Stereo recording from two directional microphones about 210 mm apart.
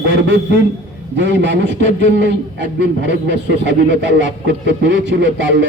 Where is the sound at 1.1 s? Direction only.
60° right (ahead or behind).